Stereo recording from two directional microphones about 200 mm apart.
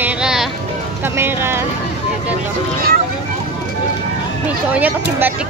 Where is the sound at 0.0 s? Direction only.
5° right (ahead or behind).